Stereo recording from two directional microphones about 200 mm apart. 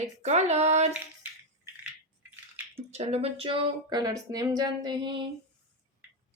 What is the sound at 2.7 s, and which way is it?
A woman's voice, 35° right (ahead or behind).